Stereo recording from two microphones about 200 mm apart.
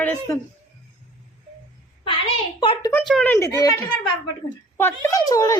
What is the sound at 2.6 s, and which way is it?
Speech, 25° left (ahead or behind).